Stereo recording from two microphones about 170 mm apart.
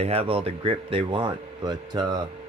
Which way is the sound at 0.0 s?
35° right (ahead or behind).